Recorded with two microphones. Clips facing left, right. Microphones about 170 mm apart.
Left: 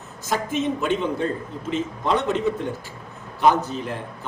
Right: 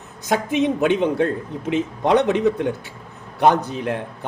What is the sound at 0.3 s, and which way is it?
A man's voice, 65° right (ahead or behind).